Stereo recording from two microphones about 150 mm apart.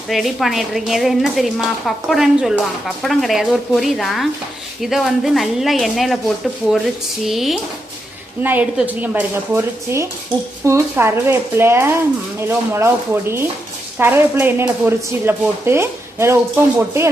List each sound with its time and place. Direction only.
0.1 s speech: centre (ahead or behind)
8.4 s speech: 10° right (ahead or behind)